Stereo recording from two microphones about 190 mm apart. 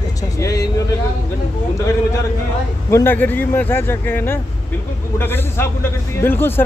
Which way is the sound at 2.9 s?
10° left (ahead or behind).